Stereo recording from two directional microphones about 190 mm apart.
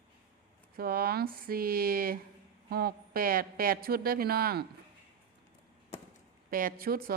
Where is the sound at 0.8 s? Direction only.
50° right (ahead or behind).